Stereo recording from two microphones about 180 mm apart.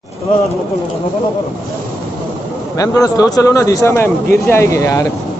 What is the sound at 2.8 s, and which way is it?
Speech, 20° left (ahead or behind).